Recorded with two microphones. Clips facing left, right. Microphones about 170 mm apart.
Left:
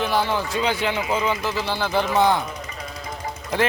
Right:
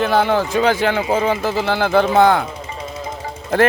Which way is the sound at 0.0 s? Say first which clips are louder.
Right 6 dB; 55° right (ahead or behind).